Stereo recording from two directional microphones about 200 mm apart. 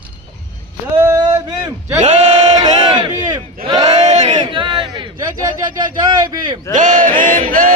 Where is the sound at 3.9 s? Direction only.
35° right (ahead or behind).